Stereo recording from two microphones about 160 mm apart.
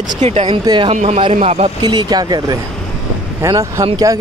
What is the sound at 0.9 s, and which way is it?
Speech, 40° right (ahead or behind).